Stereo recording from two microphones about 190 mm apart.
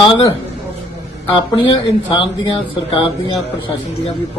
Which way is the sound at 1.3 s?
25° left (ahead or behind).